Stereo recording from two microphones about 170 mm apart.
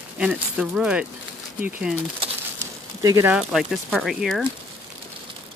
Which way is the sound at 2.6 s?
20° right (ahead or behind).